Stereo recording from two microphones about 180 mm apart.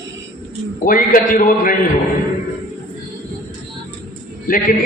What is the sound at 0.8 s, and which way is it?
Speech, 50° left (ahead or behind).